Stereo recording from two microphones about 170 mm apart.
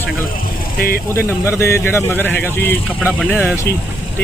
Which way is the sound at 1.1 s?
15° left (ahead or behind).